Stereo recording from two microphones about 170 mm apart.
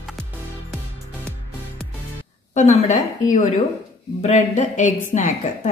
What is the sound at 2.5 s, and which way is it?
A woman's voice, 45° left (ahead or behind).